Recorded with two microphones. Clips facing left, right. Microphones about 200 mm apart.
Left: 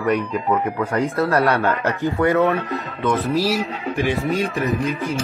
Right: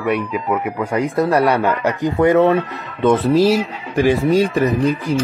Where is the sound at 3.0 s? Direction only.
30° right (ahead or behind).